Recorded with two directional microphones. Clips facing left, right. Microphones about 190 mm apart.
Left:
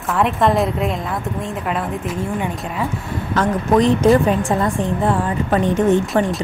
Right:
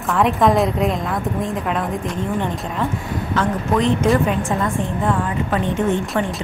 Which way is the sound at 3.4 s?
40° left (ahead or behind).